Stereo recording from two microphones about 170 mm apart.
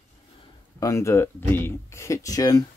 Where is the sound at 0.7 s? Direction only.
20° left (ahead or behind).